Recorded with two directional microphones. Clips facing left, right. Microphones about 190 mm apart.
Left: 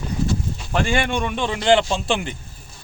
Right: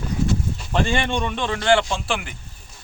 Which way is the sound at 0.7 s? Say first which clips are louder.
Left 1 dB; 10° left (ahead or behind).